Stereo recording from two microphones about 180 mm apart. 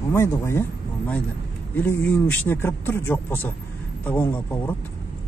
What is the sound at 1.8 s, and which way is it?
A man's voice, 10° left (ahead or behind).